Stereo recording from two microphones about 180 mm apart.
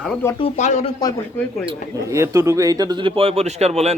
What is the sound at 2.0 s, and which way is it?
Speech, 15° right (ahead or behind).